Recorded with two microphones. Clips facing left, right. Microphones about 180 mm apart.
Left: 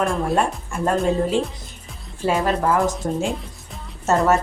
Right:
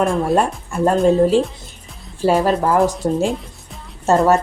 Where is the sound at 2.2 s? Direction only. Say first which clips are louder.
Right 4 dB; 35° right (ahead or behind).